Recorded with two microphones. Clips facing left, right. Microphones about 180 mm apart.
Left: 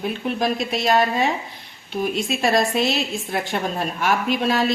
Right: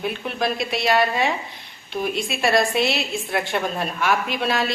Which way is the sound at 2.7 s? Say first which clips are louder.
Left 1 dB; 40° left (ahead or behind).